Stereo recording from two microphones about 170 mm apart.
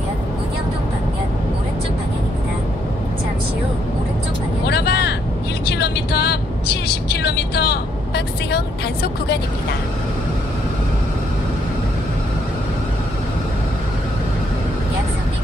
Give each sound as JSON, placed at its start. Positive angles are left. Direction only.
{"t": 4.6, "sound": "vehicle", "side_deg": 75}